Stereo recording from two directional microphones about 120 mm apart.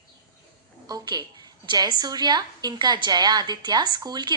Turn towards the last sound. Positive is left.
turn(degrees=-35)  # may be behind; listen again after turning